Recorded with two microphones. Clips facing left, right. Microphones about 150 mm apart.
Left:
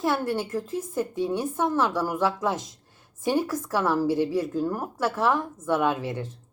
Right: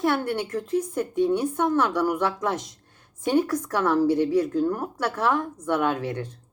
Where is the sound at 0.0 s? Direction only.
5° left (ahead or behind).